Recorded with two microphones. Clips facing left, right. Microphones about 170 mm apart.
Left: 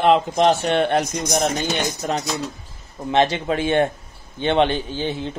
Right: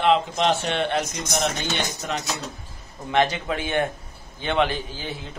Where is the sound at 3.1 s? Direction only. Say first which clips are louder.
Left 3 dB; 25° left (ahead or behind).